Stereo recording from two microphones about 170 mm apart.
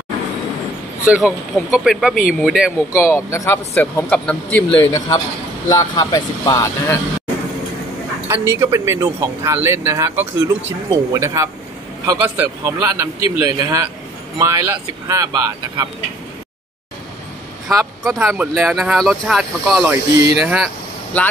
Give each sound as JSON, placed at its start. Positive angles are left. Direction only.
{"t": 1.0, "sound": "speech", "side_deg": -5}
{"t": 2.9, "sound": "speech", "side_deg": 15}
{"t": 8.3, "sound": "speech", "side_deg": -15}
{"t": 17.6, "sound": "vehicle", "side_deg": -20}
{"t": 18.2, "sound": "speech", "side_deg": -10}
{"t": 18.5, "sound": "speech", "side_deg": 0}
{"t": 21.1, "sound": "speech", "side_deg": 10}